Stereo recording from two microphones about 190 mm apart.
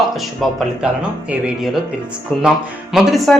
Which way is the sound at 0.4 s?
Centre (ahead or behind).